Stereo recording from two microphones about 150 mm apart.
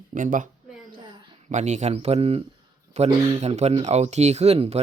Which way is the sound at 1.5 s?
50° right (ahead or behind).